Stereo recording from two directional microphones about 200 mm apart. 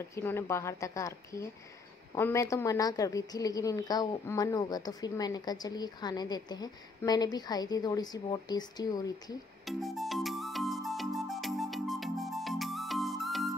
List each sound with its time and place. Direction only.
0.1 s a woman's voice: 10° left (ahead or behind)
9.7 s music: centre (ahead or behind)